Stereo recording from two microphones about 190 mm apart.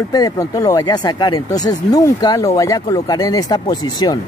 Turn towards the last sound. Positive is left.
turn(degrees=20)  # may be behind; listen again after turning